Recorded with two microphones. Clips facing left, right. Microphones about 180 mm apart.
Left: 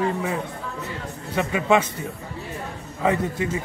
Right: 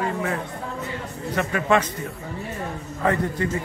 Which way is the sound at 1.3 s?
10° left (ahead or behind).